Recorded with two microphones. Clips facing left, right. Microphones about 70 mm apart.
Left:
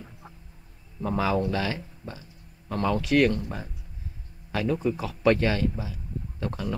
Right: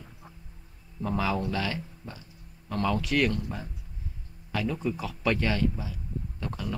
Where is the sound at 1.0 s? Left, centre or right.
Centre.